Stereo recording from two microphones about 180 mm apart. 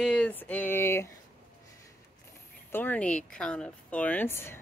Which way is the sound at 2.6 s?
10° left (ahead or behind).